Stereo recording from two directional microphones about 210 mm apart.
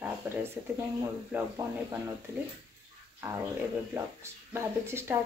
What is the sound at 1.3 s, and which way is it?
Speech, 5° right (ahead or behind).